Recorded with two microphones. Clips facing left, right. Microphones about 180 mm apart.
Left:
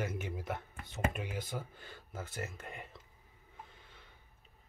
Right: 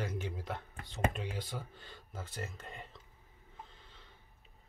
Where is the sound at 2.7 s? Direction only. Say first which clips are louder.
Left 1 dB; 15° left (ahead or behind).